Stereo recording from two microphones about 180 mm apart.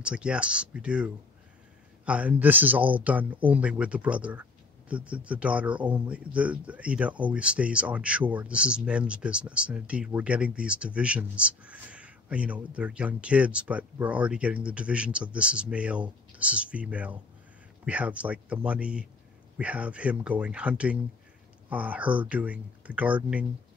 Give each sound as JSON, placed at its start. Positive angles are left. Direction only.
{"t": 0.0, "sound": "speech", "side_deg": -5}